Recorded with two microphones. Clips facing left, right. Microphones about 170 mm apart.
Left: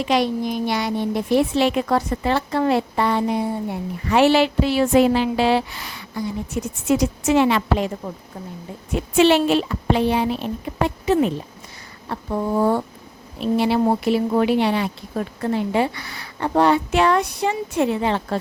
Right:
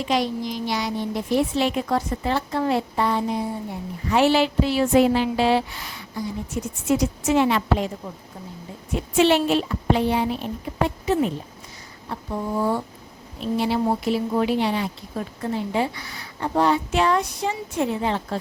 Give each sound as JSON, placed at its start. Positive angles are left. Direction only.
{"t": 0.0, "sound": "a woman's voice", "side_deg": 70}
{"t": 9.1, "sound": "a child's voice", "side_deg": 90}
{"t": 12.0, "sound": "a woman's voice", "side_deg": 60}